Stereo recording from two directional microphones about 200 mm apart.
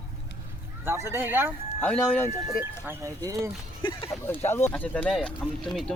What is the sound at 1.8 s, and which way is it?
Speech, 10° left (ahead or behind).